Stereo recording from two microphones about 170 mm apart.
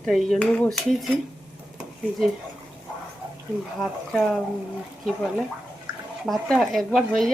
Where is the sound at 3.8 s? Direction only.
5° left (ahead or behind).